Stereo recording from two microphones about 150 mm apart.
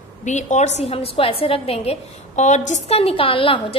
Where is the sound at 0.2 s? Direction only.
55° left (ahead or behind).